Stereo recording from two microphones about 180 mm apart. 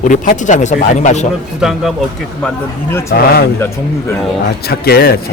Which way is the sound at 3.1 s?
60° left (ahead or behind).